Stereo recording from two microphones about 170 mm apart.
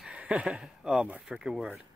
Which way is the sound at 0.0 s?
5° right (ahead or behind).